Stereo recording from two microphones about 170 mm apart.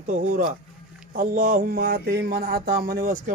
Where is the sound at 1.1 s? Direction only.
50° right (ahead or behind).